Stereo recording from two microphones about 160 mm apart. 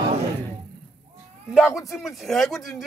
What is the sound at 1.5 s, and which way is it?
Speech, centre (ahead or behind).